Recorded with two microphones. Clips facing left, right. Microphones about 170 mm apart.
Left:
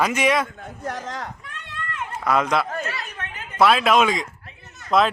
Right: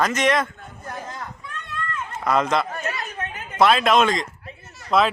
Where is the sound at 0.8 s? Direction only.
85° left.